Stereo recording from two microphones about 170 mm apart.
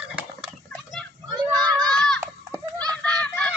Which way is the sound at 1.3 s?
25° right (ahead or behind).